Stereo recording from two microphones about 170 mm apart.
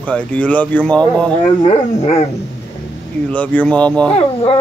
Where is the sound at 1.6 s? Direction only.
40° left (ahead or behind).